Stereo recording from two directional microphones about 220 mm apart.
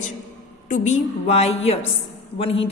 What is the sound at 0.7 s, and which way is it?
A woman's voice, 35° left (ahead or behind).